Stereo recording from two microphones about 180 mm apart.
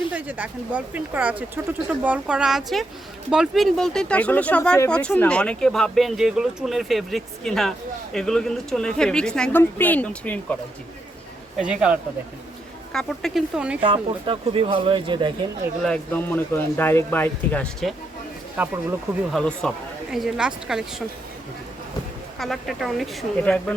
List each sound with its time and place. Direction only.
0.1 s speech: 10° right (ahead or behind); by 10.6 s 10° left (ahead or behind)
11.5 s speech: 5° right (ahead or behind)
13.8 s speech: 30° right (ahead or behind)
15.8 s speech: 5° left (ahead or behind)
18.5 s speech: 10° right (ahead or behind)
19.4 s speech: 5° left (ahead or behind)
22.4 s speech: centre (ahead or behind)